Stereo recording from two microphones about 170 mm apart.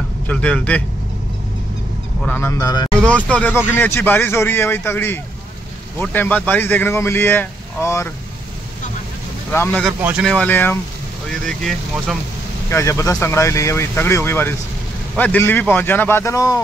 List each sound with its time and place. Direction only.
0.3 s speech: 10° left (ahead or behind)
2.2 s speech: 10° left (ahead or behind)
3.3 s speech: 10° left (ahead or behind)
9.5 s speech: 10° left (ahead or behind)
11.4 s speech: centre (ahead or behind)
12.6 s speech: 15° left (ahead or behind)